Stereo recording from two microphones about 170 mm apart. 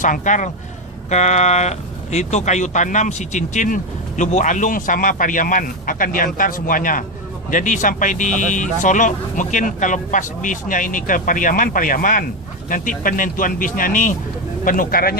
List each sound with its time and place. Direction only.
0.0 s speech: 50° left (ahead or behind)